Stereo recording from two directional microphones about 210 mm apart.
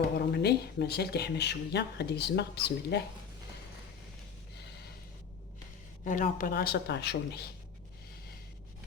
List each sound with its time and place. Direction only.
0.2 s speech: 50° left (ahead or behind)
6.1 s speech: 40° left (ahead or behind)